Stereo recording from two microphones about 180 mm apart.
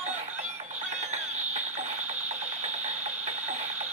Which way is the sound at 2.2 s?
40° right (ahead or behind).